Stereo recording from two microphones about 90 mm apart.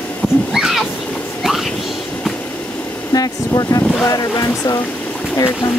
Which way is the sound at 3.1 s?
45° left (ahead or behind).